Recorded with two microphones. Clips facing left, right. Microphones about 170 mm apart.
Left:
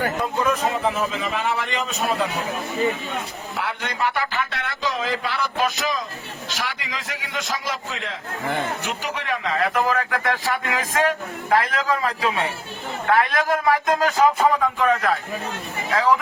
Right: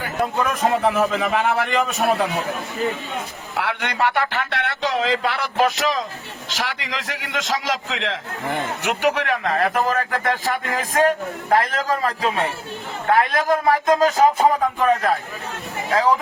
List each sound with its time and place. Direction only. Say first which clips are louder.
0.6 s a man's voice: right 4 dB; 65° right (ahead or behind)
3.5 s a man's voice: right 4 dB; 70° right (ahead or behind); by 16.2 s 30° right (ahead or behind)